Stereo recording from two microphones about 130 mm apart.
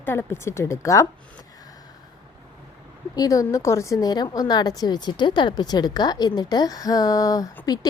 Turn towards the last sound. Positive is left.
turn(degrees=30)  # may be behind; listen again after turning